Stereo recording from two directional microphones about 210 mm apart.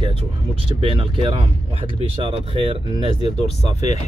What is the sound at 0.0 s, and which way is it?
Speech, 25° right (ahead or behind).